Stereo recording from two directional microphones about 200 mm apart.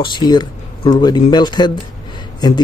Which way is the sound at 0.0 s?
20° left (ahead or behind).